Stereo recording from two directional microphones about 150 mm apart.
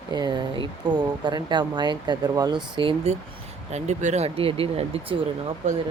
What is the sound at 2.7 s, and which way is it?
Speech, 40° right (ahead or behind).